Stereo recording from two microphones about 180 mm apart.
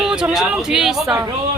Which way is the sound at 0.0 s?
5° right (ahead or behind).